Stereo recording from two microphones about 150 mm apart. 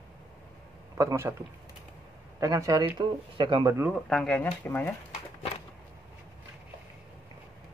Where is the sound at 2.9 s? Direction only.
35° right (ahead or behind).